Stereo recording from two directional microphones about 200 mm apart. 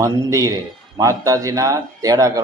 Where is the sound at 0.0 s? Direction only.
15° right (ahead or behind).